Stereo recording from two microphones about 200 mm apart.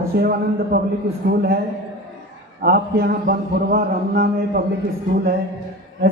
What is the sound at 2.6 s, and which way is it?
A man's voice, 50° right (ahead or behind).